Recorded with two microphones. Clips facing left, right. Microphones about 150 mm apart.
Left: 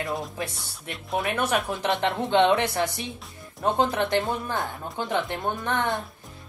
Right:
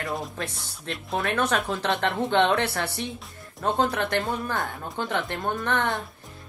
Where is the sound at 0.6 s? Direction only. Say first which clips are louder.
Right 3 dB; centre (ahead or behind).